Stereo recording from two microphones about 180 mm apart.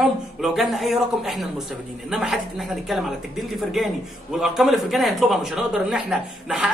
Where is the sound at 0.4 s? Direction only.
Centre (ahead or behind).